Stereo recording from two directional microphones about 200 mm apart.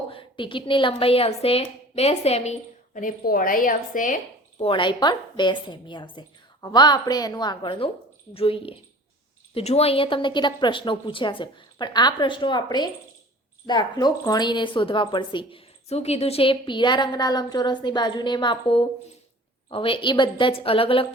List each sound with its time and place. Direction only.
0.1 s speech: 25° left (ahead or behind); by 4.2 s 40° left (ahead or behind)
4.5 s speech: 25° left (ahead or behind)